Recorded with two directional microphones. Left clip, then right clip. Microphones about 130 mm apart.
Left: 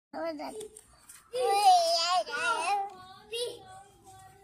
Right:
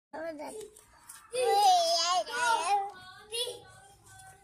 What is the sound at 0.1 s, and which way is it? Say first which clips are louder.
Speech: left 3 dB; 20° left (ahead or behind).